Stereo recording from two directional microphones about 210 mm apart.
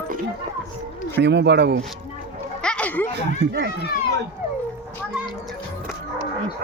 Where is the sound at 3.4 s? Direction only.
50° right (ahead or behind).